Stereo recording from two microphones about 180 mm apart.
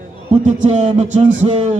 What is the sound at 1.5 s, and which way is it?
Speech, 30° right (ahead or behind).